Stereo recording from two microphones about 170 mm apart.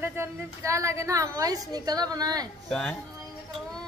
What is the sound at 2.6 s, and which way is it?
Speech, 5° left (ahead or behind).